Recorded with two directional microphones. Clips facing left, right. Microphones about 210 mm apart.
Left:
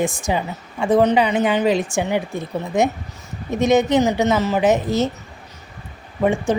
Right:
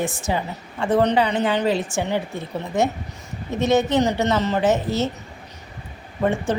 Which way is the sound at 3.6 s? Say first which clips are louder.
Left 3 dB; 15° left (ahead or behind).